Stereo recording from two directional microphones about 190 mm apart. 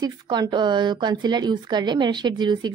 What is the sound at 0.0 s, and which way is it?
Speech, 20° right (ahead or behind).